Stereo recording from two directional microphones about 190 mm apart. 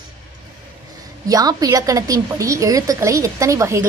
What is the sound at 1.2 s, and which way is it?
A woman's voice, 20° right (ahead or behind).